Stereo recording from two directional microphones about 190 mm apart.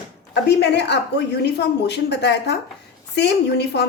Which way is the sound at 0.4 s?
60° left (ahead or behind).